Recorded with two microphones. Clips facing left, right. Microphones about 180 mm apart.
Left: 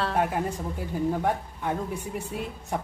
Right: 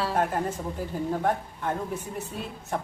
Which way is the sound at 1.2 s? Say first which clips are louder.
Even; 10° left (ahead or behind).